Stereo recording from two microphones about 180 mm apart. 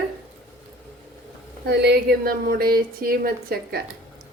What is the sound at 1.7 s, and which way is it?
A woman's voice, 65° right (ahead or behind).